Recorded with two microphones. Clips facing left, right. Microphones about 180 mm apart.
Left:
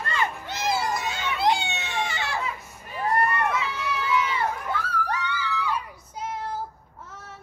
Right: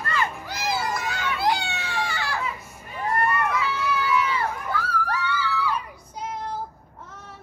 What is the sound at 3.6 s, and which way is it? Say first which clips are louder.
Run: right 4 dB; 25° left (ahead or behind).